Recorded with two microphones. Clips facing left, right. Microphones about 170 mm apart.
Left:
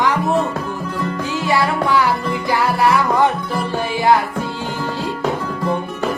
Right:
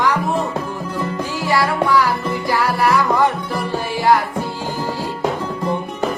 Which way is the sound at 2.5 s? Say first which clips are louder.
Left 1 dB; 20° left (ahead or behind).